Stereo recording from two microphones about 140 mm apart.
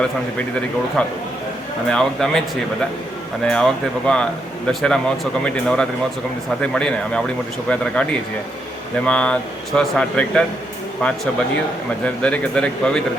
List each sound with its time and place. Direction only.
1.0 s speech: 5° left (ahead or behind)
3.4 s speech: 5° left (ahead or behind)
12.2 s speech: 10° left (ahead or behind)